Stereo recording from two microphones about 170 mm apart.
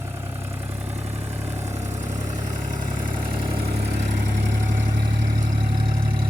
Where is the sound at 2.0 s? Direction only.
20° right (ahead or behind).